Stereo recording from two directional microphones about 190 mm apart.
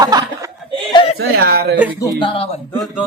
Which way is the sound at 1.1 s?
55° right (ahead or behind).